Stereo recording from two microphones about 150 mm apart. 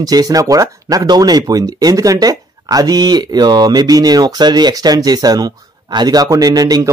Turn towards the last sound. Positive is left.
turn(degrees=-25)  # may be behind; listen again after turning